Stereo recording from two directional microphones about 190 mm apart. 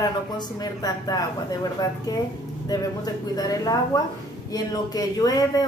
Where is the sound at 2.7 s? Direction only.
20° left (ahead or behind).